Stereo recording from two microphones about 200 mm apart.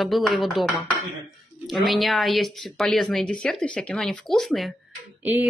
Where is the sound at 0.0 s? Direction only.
Centre (ahead or behind).